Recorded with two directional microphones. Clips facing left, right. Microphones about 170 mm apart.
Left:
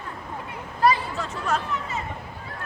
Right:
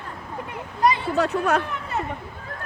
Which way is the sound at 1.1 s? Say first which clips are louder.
Right 7 dB; 65° right (ahead or behind).